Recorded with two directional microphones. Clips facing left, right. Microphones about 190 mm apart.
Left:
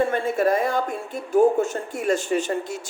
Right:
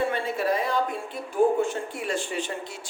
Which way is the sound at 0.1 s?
45° left (ahead or behind).